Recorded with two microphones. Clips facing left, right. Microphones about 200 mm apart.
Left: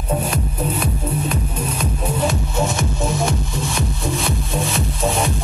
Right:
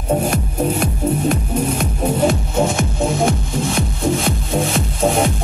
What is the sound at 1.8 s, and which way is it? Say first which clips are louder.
Music: right 4 dB; 50° right (ahead or behind).